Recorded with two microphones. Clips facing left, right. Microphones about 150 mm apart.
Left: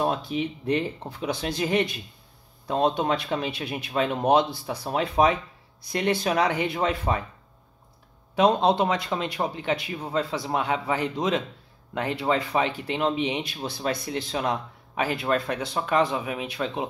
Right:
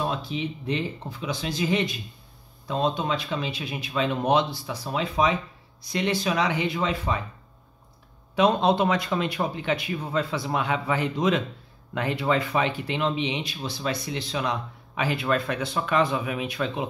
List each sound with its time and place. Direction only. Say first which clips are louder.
0.0 s speech: left 3 dB; 50° left (ahead or behind)
8.4 s speech: even; 35° left (ahead or behind)